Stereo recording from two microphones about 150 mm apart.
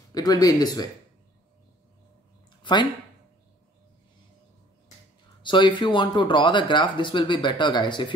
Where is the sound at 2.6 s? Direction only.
30° left (ahead or behind).